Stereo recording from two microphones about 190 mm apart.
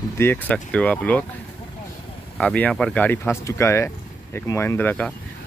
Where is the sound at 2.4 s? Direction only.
5° left (ahead or behind).